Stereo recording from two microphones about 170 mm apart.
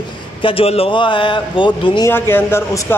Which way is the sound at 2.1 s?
15° left (ahead or behind).